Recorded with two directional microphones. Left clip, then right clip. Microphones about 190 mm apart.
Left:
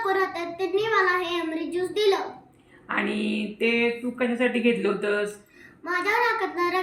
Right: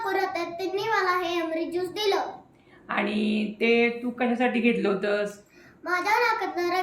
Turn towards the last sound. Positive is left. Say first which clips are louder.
# left 1 dB
turn(degrees=-15)  # may be behind; listen again after turning